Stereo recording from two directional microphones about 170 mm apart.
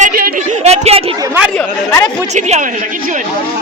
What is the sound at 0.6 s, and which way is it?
Speech, 40° right (ahead or behind).